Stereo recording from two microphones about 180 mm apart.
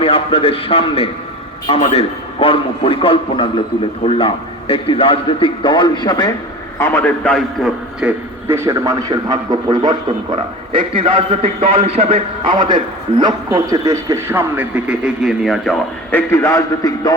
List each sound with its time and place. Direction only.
0.0 s a man's voice: 30° left (ahead or behind)
4.7 s a man's voice: 30° left (ahead or behind); by 8.1 s centre (ahead or behind)
8.4 s a man's voice: 15° right (ahead or behind)
16.1 s a man's voice: 15° left (ahead or behind)